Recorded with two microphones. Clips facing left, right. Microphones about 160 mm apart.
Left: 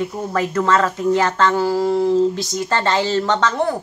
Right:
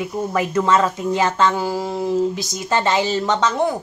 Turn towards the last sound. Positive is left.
turn(degrees=-15)  # may be behind; listen again after turning